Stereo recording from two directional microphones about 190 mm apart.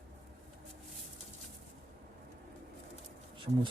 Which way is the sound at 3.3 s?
25° right (ahead or behind).